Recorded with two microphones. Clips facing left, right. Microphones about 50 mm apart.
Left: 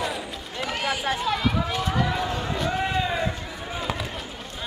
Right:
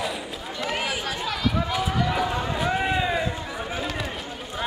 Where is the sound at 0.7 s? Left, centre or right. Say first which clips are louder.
Left 1 dB; centre.